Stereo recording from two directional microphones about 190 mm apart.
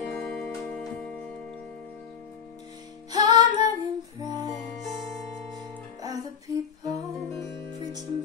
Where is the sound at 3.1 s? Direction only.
20° right (ahead or behind).